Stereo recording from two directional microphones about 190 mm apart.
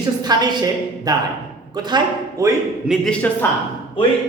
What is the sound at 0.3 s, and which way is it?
Speech, 20° right (ahead or behind).